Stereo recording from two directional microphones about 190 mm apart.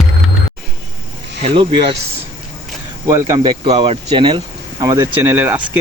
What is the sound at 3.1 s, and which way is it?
Speech, 15° right (ahead or behind).